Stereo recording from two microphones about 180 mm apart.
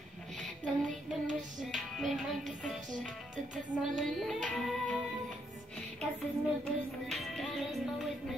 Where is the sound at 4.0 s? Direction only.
5° left (ahead or behind).